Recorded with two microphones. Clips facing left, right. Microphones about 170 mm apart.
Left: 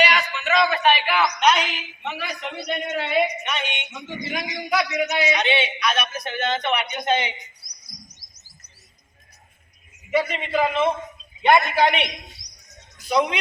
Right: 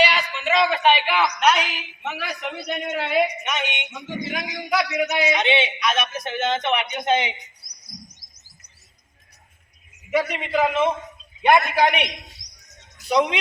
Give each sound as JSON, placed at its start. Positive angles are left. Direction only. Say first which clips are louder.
{"t": 0.0, "sound": "a sound", "louder": "right 1 dB", "side_deg": -30}
{"t": 1.2, "sound": "a woman's voice", "louder": "even", "side_deg": -5}
{"t": 5.4, "sound": "a man's voice", "louder": "right 1 dB", "side_deg": -20}
{"t": 7.9, "sound": "chirp", "louder": "right 5 dB", "side_deg": -55}
{"t": 10.1, "sound": "a woman's voice", "louder": "even", "side_deg": -10}